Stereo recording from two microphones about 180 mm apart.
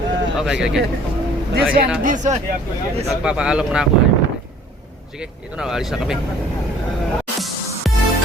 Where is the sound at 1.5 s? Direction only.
55° right (ahead or behind).